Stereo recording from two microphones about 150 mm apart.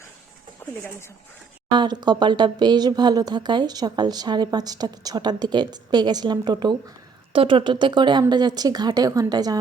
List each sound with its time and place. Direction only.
1.7 s speech: 30° right (ahead or behind)